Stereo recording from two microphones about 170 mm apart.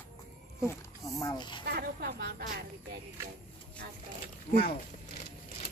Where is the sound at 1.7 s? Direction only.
65° right (ahead or behind).